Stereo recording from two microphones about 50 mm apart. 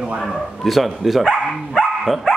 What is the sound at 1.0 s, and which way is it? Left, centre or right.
Dog, centre.